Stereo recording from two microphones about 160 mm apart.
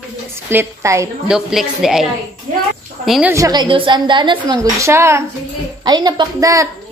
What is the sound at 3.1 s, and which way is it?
Speech, 5° right (ahead or behind).